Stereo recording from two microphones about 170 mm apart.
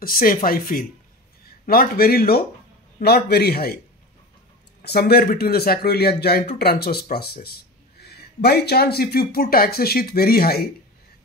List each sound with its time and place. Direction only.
0.0 s speech: 60° left (ahead or behind)
4.8 s speech: 70° left (ahead or behind)